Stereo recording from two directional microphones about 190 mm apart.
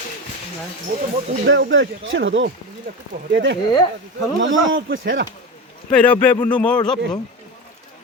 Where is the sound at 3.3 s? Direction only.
70° right (ahead or behind).